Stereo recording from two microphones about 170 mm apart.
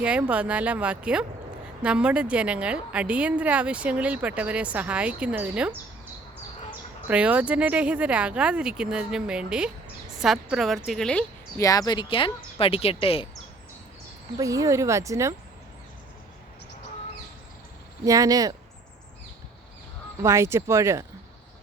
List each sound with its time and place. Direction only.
0.0 s a woman's voice: 5° right (ahead or behind)
7.1 s a woman's voice: 10° right (ahead or behind)
11.5 s speech: 20° left (ahead or behind)
14.3 s a woman's voice: 20° right (ahead or behind)
18.0 s speech: 20° right (ahead or behind)
20.2 s a woman's voice: 15° right (ahead or behind)